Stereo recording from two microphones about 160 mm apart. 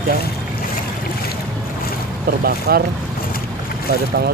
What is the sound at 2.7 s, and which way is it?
Speech, 80° right.